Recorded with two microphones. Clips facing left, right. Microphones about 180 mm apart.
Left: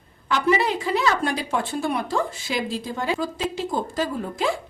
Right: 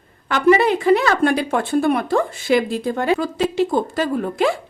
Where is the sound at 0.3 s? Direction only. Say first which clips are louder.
Right 7 dB; 55° right (ahead or behind).